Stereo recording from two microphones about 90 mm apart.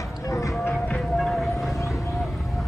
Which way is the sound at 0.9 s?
Centre (ahead or behind).